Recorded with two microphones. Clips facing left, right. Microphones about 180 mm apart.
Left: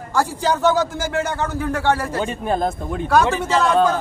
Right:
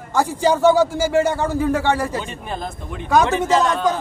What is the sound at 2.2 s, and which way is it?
Speech, 45° left (ahead or behind).